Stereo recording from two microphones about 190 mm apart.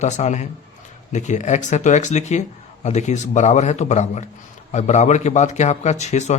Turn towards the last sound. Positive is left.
turn(degrees=35)  # may be behind; listen again after turning